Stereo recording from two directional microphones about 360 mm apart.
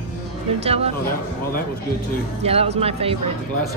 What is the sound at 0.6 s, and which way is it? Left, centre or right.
Speech, centre.